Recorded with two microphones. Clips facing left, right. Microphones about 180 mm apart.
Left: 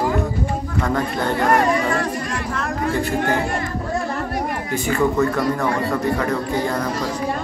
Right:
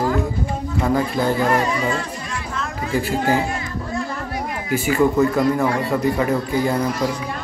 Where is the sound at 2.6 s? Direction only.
60° left (ahead or behind).